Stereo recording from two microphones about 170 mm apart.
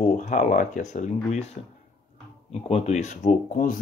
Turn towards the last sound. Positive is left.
turn(degrees=55)  # may be behind; listen again after turning